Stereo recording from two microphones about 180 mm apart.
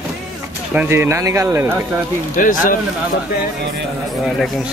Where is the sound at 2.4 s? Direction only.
50° left (ahead or behind).